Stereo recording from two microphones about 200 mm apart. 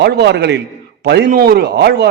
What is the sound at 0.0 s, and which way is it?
A man's voice, 55° right (ahead or behind).